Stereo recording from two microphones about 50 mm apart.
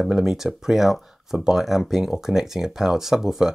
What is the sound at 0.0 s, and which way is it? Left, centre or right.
Speech, centre.